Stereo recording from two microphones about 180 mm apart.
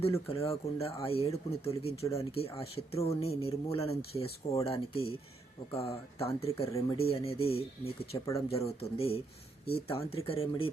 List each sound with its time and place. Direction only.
0.0 s speech: 35° left (ahead or behind)